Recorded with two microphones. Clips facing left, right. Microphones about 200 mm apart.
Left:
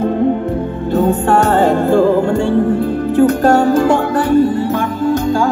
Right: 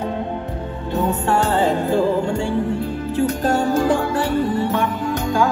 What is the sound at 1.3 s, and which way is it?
Music, 55° left (ahead or behind).